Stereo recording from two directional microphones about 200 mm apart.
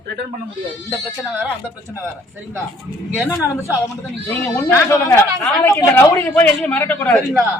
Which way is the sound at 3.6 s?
15° left (ahead or behind).